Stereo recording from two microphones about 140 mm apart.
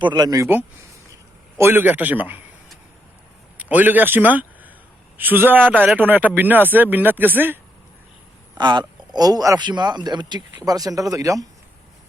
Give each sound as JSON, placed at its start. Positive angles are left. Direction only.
{"t": 0.0, "sound": "speech", "side_deg": -30}
{"t": 1.5, "sound": "speech", "side_deg": -15}
{"t": 3.6, "sound": "a man's voice", "side_deg": -10}
{"t": 8.5, "sound": "speech", "side_deg": -30}